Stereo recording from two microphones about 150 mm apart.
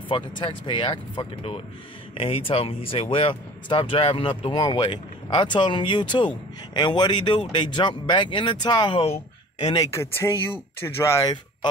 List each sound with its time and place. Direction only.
0.4 s speech: 35° left (ahead or behind)
9.8 s speech: 20° left (ahead or behind)